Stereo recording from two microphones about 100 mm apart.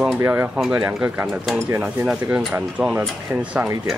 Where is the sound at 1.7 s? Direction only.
15° right (ahead or behind).